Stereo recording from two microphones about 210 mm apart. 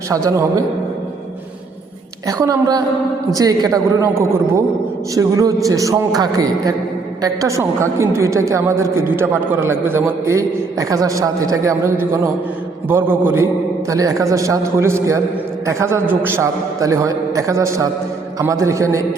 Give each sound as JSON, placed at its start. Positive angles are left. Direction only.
{"t": 0.1, "sound": "a woman's voice", "side_deg": -15}
{"t": 2.2, "sound": "a woman's voice", "side_deg": -15}